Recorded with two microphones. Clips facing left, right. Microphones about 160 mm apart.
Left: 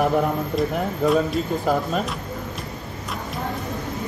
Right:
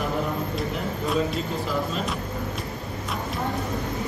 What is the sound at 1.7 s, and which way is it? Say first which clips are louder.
Speech: left 7 dB; 50° left (ahead or behind).